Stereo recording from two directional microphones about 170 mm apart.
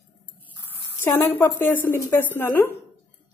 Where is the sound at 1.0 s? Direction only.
15° left (ahead or behind).